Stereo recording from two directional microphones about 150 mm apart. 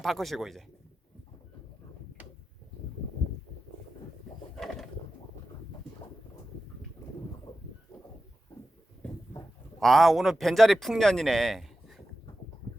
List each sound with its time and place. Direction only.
0.0 s a man's voice: centre (ahead or behind)
4.5 s pigeon: centre (ahead or behind)
7.5 s a sound: 25° left (ahead or behind)
9.8 s a man's voice: centre (ahead or behind)